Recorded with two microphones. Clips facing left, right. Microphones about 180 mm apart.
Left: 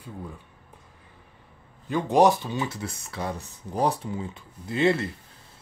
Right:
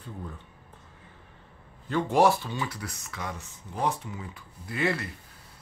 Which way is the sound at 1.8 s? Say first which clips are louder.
Left 3 dB; 15° left (ahead or behind).